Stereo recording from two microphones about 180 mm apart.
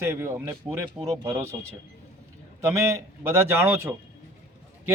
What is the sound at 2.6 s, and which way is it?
A man's voice, 15° right (ahead or behind).